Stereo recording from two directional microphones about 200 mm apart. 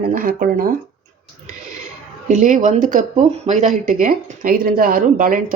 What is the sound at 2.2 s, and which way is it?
Speech, 40° right (ahead or behind).